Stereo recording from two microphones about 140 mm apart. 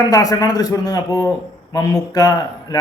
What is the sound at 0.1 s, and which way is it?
A man's voice, 25° left (ahead or behind).